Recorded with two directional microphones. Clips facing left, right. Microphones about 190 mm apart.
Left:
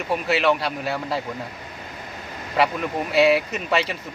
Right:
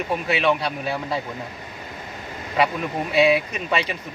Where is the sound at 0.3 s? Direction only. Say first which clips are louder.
Left 1 dB; centre (ahead or behind).